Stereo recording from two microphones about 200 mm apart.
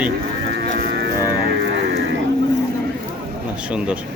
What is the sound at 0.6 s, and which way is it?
Livestock, 50° right (ahead or behind).